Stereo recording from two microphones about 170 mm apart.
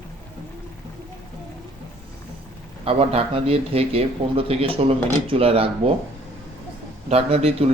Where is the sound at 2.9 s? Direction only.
35° right (ahead or behind).